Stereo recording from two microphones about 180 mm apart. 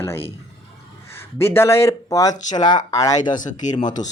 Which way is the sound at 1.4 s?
15° left (ahead or behind).